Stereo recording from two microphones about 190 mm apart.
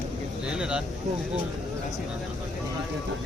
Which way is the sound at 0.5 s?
5° right (ahead or behind).